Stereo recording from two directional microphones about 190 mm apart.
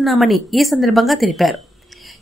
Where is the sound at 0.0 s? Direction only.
Centre (ahead or behind).